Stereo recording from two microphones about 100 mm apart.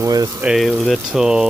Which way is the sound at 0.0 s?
35° right (ahead or behind).